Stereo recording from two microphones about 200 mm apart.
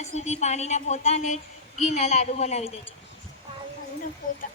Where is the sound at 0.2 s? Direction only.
35° left (ahead or behind).